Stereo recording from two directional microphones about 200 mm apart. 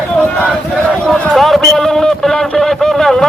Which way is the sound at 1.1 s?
5° left (ahead or behind).